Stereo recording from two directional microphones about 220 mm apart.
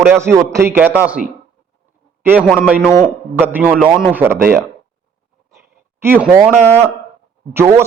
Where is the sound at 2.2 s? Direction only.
5° right (ahead or behind).